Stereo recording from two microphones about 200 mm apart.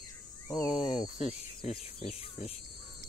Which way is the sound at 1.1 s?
35° left (ahead or behind).